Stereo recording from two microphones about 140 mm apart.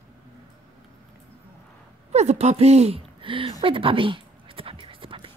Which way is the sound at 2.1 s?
50° right (ahead or behind).